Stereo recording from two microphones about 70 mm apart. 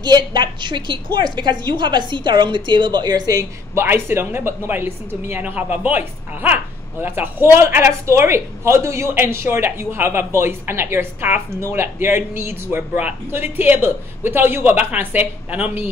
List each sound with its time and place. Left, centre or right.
0.0 s a woman's voice: right
3.7 s a woman's voice: right